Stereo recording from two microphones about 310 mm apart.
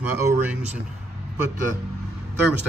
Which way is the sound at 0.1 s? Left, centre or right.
Centre.